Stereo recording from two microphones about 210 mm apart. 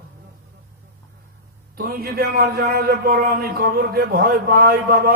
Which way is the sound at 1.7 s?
45° right (ahead or behind).